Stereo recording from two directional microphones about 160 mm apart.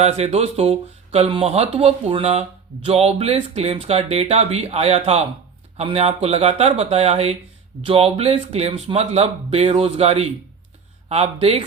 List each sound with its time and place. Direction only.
0.0 s speech: 40° right (ahead or behind)